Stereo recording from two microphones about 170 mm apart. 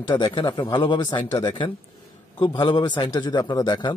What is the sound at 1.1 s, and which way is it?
Speech, 10° left (ahead or behind).